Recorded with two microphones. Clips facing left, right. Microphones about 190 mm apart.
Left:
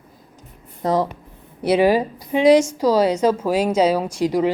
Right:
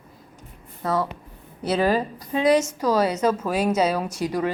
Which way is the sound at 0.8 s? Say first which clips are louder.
Left 5 dB; 20° left (ahead or behind).